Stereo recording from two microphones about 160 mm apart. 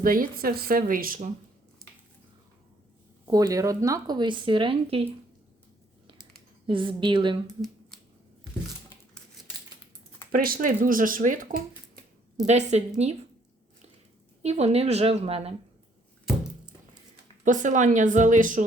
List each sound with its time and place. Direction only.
0.0 s speech: 60° right (ahead or behind)
3.2 s speech: 20° right (ahead or behind)
6.7 s a woman's voice: 30° right (ahead or behind)
7.4 s speech: centre (ahead or behind)
10.3 s speech: 65° right (ahead or behind)
12.5 s speech: 45° right (ahead or behind)
14.4 s a woman's voice: 40° right (ahead or behind)
16.2 s a sound: 5° right (ahead or behind)
17.4 s speech: 50° right (ahead or behind)